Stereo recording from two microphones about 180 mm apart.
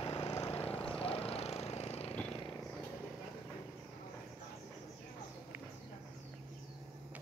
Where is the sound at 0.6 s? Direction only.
5° left (ahead or behind).